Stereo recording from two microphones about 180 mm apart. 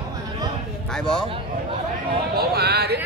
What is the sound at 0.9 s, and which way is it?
Speech, 5° left (ahead or behind).